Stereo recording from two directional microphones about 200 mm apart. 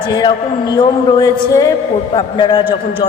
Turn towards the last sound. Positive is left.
turn(degrees=25)  # may be behind; listen again after turning